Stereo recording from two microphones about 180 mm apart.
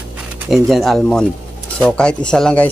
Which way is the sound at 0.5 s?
Centre (ahead or behind).